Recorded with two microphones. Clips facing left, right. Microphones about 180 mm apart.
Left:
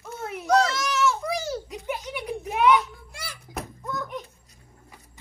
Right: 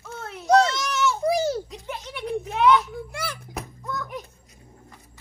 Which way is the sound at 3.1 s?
60° right (ahead or behind).